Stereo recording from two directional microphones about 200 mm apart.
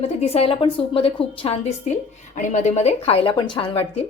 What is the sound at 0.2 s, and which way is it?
A woman's voice, 30° left (ahead or behind).